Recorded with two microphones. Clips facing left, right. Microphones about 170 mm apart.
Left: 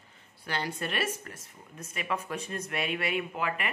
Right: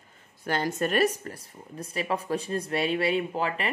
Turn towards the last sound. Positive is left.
turn(degrees=-30)  # may be behind; listen again after turning